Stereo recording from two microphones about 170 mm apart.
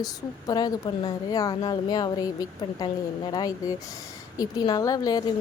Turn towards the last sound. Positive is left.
turn(degrees=20)  # may be behind; listen again after turning